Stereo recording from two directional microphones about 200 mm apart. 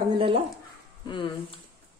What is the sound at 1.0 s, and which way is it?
Speech, 25° left (ahead or behind).